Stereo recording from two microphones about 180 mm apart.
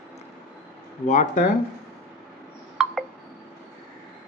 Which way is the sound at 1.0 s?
45° left (ahead or behind).